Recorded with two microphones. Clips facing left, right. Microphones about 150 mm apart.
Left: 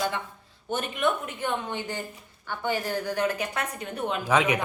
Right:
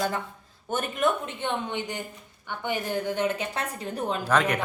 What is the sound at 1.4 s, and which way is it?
A woman's voice, 20° right (ahead or behind).